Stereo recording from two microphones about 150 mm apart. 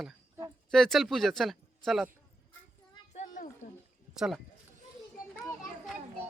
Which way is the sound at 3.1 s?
55° left (ahead or behind).